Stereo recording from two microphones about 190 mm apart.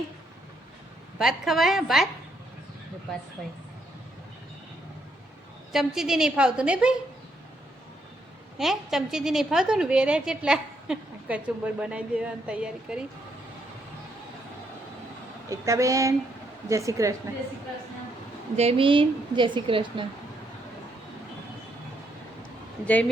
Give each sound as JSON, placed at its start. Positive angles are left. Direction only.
{"t": 1.2, "sound": "a woman's voice", "side_deg": 0}
{"t": 5.7, "sound": "a woman's voice", "side_deg": 0}
{"t": 8.5, "sound": "a woman's voice", "side_deg": 0}
{"t": 15.4, "sound": "speech", "side_deg": -15}
{"t": 18.5, "sound": "a woman's voice", "side_deg": -30}